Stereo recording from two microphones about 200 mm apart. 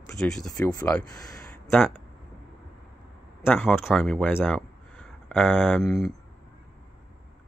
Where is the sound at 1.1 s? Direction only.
15° left (ahead or behind).